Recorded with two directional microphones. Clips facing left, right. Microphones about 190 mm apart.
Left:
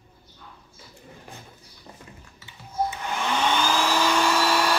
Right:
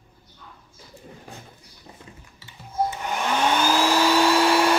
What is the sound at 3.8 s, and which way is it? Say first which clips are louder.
Vacuum cleaner: right 4 dB; 35° right (ahead or behind).